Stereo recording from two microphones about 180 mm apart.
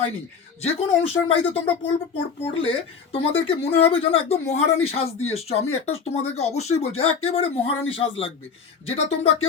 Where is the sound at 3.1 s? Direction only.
30° left (ahead or behind).